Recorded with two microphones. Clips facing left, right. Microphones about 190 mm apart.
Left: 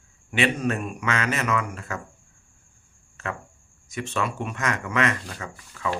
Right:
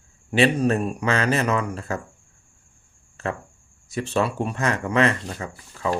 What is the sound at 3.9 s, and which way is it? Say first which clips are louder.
Speech: right 5 dB; 35° right (ahead or behind).